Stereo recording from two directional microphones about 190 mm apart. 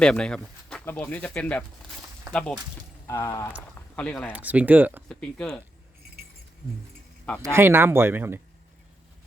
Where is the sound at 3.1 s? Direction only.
15° left (ahead or behind).